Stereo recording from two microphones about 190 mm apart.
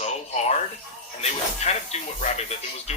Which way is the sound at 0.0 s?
35° left (ahead or behind).